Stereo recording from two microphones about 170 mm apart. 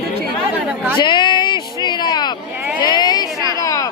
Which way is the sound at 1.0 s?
25° left (ahead or behind).